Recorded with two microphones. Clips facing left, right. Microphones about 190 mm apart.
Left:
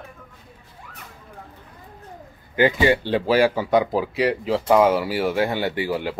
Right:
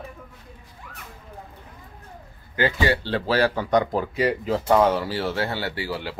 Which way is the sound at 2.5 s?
15° left (ahead or behind).